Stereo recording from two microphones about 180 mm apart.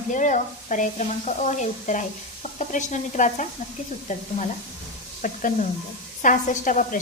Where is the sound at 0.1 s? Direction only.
45° left (ahead or behind).